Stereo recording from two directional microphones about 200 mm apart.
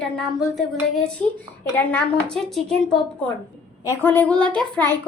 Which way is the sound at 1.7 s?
5° left (ahead or behind).